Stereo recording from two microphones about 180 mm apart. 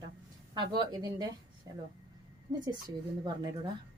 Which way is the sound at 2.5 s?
25° right (ahead or behind).